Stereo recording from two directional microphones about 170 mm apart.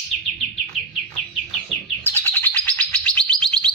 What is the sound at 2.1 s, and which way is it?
Bird, 10° left (ahead or behind).